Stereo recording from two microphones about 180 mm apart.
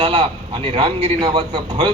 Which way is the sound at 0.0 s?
30° right (ahead or behind).